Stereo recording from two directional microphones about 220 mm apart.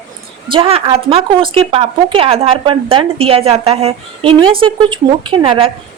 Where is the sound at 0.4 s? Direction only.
25° right (ahead or behind).